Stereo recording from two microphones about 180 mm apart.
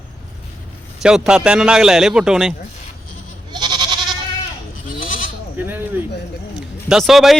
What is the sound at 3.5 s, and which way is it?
Goat, 25° right (ahead or behind).